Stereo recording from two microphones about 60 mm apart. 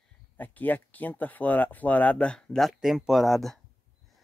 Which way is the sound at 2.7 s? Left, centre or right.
Centre.